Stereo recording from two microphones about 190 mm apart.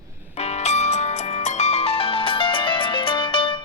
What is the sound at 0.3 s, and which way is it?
Music, 35° left (ahead or behind).